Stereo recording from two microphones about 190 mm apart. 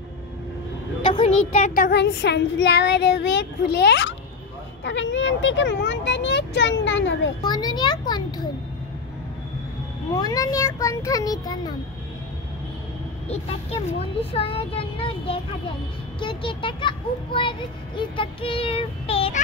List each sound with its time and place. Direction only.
1.0 s a child's voice: 30° left (ahead or behind)
1.9 s child singing: 65° left (ahead or behind)
4.8 s speech: 75° left (ahead or behind)
7.4 s a child's voice: 20° left (ahead or behind)
10.1 s a child's voice: 20° left (ahead or behind)
14.3 s a child's voice: 30° left (ahead or behind)